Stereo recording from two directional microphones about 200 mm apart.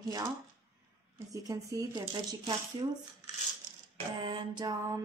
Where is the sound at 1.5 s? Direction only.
15° right (ahead or behind).